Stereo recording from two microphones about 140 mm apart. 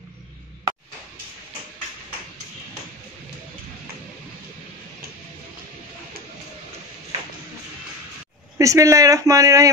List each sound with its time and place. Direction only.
8.5 s speech: 25° right (ahead or behind)